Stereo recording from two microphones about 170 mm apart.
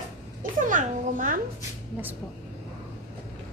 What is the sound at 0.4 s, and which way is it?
A child's voice, 50° right (ahead or behind).